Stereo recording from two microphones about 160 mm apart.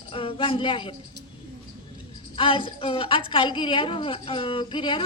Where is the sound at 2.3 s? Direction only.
35° left (ahead or behind).